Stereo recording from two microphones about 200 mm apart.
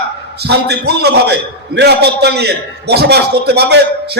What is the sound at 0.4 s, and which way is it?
A man's voice, 55° right (ahead or behind).